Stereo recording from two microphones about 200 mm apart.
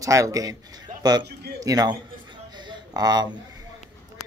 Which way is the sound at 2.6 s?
20° right (ahead or behind).